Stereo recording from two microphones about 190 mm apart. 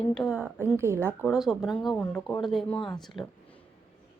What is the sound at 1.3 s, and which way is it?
A woman's voice, centre (ahead or behind).